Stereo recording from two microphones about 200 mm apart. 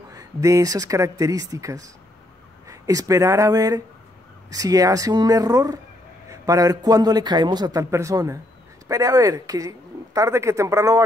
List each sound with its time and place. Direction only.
0.1 s a man's voice: 15° right (ahead or behind)